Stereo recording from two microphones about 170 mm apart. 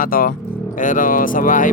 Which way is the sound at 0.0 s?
55° left (ahead or behind).